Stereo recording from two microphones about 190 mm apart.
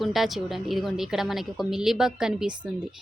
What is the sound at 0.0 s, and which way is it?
Speech, centre (ahead or behind).